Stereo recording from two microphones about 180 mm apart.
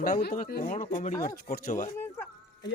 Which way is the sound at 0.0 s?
55° left (ahead or behind).